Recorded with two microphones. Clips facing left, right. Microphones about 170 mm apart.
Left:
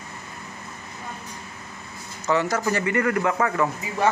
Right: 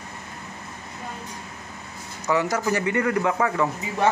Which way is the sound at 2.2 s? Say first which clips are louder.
Even; 15° right (ahead or behind).